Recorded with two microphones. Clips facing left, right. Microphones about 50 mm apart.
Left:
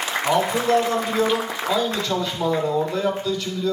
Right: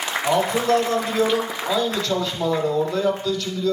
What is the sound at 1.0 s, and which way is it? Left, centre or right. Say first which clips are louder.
Speech: even; centre.